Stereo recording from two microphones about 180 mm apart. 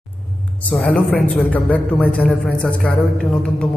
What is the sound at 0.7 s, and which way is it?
A man's voice, 5° left (ahead or behind).